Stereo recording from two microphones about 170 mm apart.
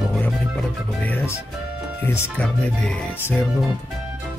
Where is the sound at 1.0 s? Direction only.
10° left (ahead or behind).